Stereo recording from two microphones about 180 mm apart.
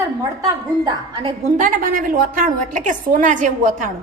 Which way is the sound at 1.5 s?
50° right (ahead or behind).